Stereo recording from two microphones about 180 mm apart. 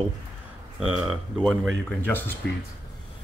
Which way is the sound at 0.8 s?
Centre (ahead or behind).